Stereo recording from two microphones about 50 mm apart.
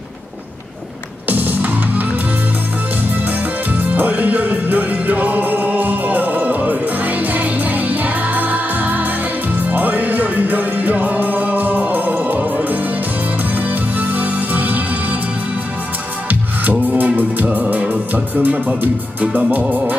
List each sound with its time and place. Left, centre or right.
1.3 s music: right
3.3 s music: right
16.9 s music: right
18.1 s speech: right